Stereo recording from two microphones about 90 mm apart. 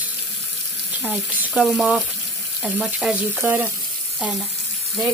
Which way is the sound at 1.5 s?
Centre (ahead or behind).